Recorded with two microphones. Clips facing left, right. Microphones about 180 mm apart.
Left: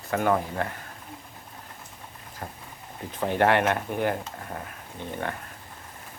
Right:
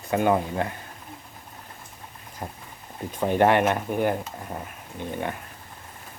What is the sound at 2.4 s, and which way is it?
Speech, 15° right (ahead or behind).